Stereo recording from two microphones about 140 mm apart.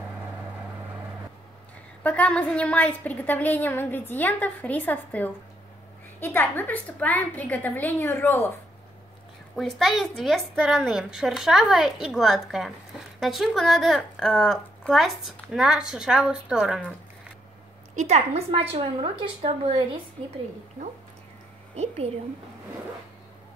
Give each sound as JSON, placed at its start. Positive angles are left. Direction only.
{"t": 2.0, "sound": "a woman's voice", "side_deg": 10}
{"t": 9.6, "sound": "speech", "side_deg": 0}
{"t": 17.9, "sound": "a woman's voice", "side_deg": -50}
{"t": 21.7, "sound": "a woman's voice", "side_deg": -45}